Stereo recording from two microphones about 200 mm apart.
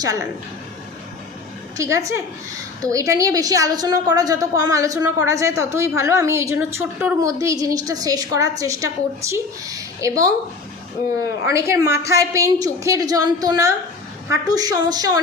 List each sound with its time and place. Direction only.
0.0 s a woman's voice: 15° right (ahead or behind)
1.7 s a woman's voice: 15° right (ahead or behind)
11.5 s a woman's voice: 15° right (ahead or behind)